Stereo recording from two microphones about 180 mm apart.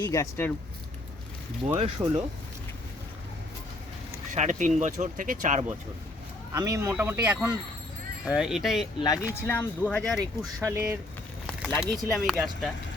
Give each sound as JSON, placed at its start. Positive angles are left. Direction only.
{"t": 0.0, "sound": "speech", "side_deg": 15}
{"t": 2.0, "sound": "speech", "side_deg": -20}
{"t": 4.3, "sound": "speech", "side_deg": -45}
{"t": 6.5, "sound": "speech", "side_deg": -20}
{"t": 9.0, "sound": "speech", "side_deg": 20}
{"t": 10.6, "sound": "speech", "side_deg": -15}
{"t": 11.4, "sound": "speech", "side_deg": 0}